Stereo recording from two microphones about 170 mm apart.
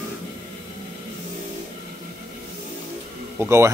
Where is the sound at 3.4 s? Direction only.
15° right (ahead or behind).